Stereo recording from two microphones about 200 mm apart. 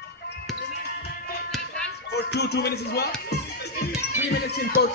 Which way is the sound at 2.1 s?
55° left (ahead or behind).